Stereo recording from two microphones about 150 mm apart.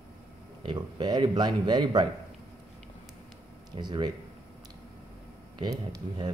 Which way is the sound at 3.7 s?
30° right (ahead or behind).